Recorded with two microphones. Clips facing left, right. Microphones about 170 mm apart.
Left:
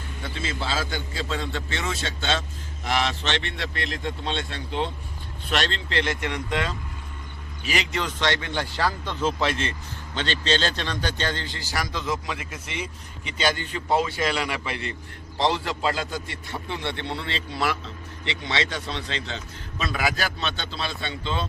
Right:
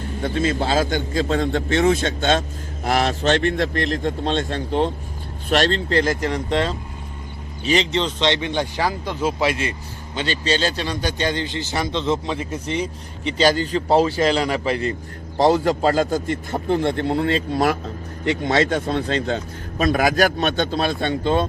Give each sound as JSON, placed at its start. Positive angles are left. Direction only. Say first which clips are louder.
{"t": 0.2, "sound": "a man's voice", "louder": "right 10 dB", "side_deg": -50}